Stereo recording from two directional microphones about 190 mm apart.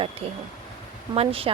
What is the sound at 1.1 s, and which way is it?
Speech, 30° right (ahead or behind).